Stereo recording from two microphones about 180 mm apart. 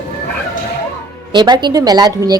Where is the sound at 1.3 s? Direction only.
25° right (ahead or behind).